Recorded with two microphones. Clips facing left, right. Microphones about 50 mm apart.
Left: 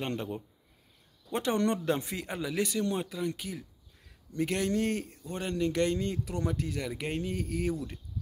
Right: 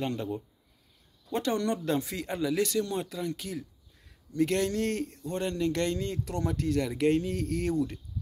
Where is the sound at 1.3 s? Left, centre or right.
Left.